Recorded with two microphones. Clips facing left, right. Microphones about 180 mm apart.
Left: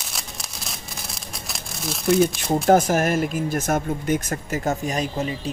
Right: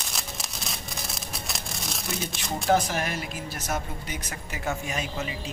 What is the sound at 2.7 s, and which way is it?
Speech, 50° left (ahead or behind).